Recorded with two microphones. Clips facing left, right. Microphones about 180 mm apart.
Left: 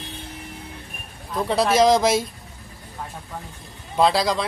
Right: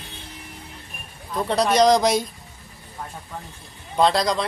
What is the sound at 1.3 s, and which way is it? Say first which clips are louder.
Speech: even; centre (ahead or behind).